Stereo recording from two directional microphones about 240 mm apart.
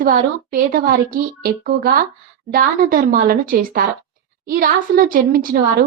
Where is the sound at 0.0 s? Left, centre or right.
Right.